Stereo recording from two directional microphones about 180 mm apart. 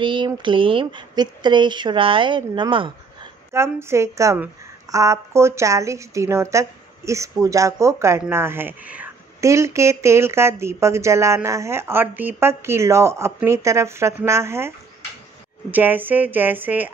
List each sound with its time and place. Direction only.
0.0 s speech: 25° right (ahead or behind)
3.5 s speech: 15° right (ahead or behind)
15.7 s speech: 10° right (ahead or behind)